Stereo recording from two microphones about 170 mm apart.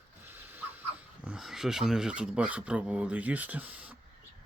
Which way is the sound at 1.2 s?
5° right (ahead or behind).